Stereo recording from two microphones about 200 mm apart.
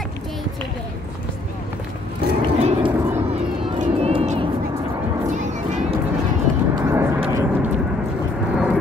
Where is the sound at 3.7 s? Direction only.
35° right (ahead or behind).